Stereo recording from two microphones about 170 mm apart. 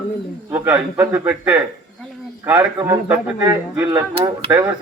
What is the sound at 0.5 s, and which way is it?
A man's voice, 15° right (ahead or behind).